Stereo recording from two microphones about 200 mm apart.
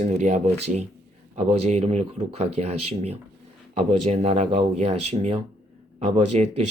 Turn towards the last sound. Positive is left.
turn(degrees=-35)  # may be behind; listen again after turning